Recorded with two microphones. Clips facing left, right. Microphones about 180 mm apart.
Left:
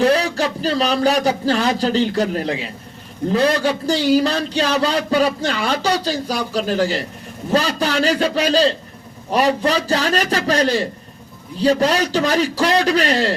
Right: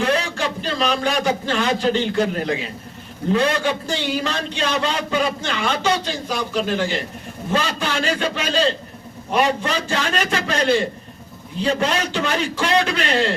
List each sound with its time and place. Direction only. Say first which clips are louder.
0.0 s a man's voice: left 5 dB; 35° left (ahead or behind)